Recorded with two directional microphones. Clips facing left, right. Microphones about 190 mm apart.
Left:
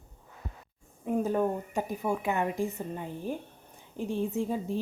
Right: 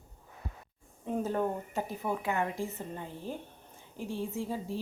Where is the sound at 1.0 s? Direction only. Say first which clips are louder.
Left 4 dB; 10° left (ahead or behind).